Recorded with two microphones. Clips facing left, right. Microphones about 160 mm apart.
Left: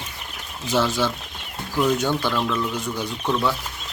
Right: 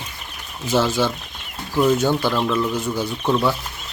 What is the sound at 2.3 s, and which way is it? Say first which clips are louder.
Speech: right 3 dB; 20° right (ahead or behind).